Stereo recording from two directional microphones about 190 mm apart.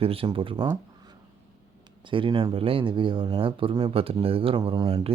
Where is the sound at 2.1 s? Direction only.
25° right (ahead or behind).